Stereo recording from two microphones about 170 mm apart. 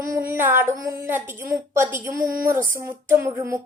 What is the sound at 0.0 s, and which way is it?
A woman's voice, 15° right (ahead or behind).